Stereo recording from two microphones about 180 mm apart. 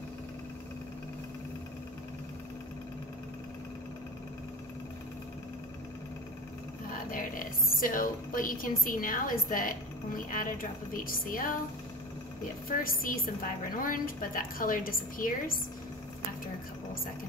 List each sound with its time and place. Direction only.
7.1 s a woman's voice: 50° left (ahead or behind)
12.6 s a woman's voice: 50° left (ahead or behind)